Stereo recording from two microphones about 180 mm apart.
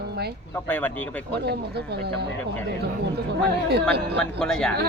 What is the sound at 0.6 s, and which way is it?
Music, 10° left (ahead or behind).